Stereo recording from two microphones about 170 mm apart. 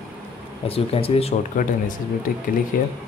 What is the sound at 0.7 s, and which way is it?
Speech, 35° left (ahead or behind).